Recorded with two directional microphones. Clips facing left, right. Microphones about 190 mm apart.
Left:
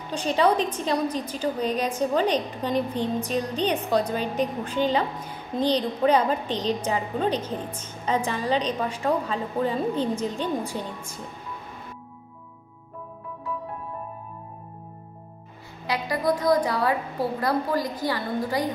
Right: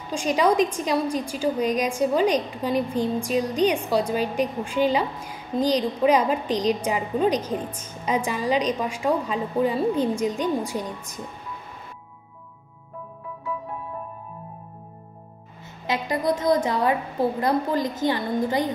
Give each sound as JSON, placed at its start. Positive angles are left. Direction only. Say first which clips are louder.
{"t": 0.1, "sound": "a woman's voice", "louder": "right 1 dB", "side_deg": -10}
{"t": 15.9, "sound": "a woman's voice", "louder": "right 1 dB", "side_deg": -20}